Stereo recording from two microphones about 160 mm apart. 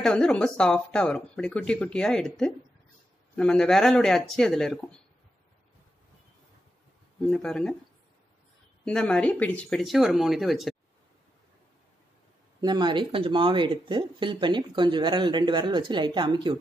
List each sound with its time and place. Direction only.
0.0 s speech: 5° left (ahead or behind)
7.2 s speech: 5° left (ahead or behind)
8.8 s speech: 5° left (ahead or behind)
12.5 s speech: 25° right (ahead or behind)